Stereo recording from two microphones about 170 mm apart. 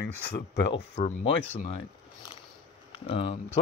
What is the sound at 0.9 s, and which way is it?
Speech, 30° left (ahead or behind).